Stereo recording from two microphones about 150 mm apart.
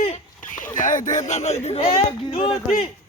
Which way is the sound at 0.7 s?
60° left (ahead or behind).